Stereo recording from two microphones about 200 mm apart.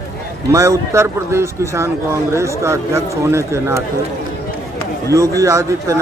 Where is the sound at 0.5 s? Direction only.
15° right (ahead or behind).